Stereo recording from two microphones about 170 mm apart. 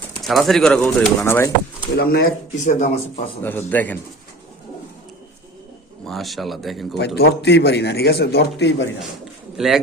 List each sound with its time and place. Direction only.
0.2 s speech: centre (ahead or behind)
2.0 s speech: 65° left (ahead or behind); by 2.9 s 45° left (ahead or behind)
3.4 s speech: 10° left (ahead or behind)
6.1 s speech: centre (ahead or behind)
7.2 s a man's voice: 85° left
9.6 s speech: centre (ahead or behind)